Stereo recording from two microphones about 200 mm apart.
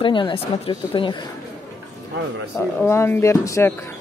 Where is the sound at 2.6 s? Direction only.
10° left (ahead or behind).